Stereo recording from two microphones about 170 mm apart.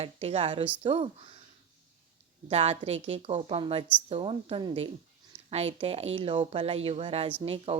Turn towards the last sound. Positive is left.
turn(degrees=-35)  # may be behind; listen again after turning